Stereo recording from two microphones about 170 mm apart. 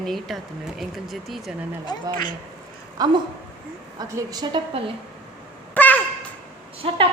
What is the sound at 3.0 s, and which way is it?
A woman's voice, 20° right (ahead or behind).